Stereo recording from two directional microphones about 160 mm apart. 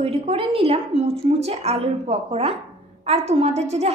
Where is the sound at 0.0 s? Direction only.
40° right (ahead or behind).